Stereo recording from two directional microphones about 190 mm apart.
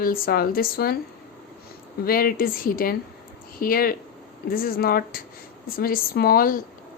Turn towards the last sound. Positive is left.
turn(degrees=50)  # may be behind; listen again after turning